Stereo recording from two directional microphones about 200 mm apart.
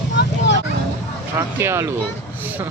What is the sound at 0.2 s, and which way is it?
Vehicle, 60° left (ahead or behind).